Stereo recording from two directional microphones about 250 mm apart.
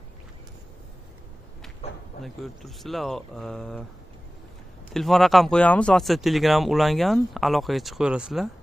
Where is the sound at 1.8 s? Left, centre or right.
Left.